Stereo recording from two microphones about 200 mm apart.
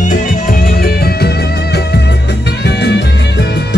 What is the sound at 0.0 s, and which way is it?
Music, 45° left (ahead or behind).